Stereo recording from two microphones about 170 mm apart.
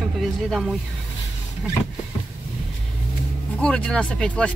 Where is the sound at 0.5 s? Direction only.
Centre (ahead or behind).